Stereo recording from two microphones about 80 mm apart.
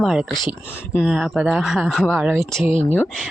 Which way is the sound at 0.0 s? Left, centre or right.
Centre.